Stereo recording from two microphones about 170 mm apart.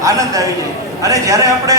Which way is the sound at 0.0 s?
20° right (ahead or behind).